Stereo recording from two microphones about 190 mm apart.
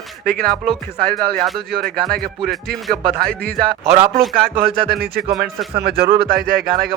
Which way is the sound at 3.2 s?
55° right (ahead or behind).